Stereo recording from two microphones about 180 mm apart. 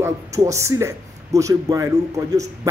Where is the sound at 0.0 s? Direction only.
15° right (ahead or behind).